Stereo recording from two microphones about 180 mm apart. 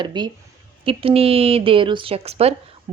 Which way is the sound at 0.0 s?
25° right (ahead or behind).